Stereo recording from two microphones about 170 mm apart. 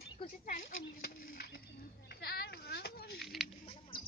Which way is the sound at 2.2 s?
70° left (ahead or behind).